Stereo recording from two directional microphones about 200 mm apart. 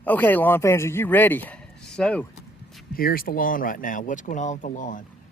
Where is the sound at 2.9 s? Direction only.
45° left (ahead or behind).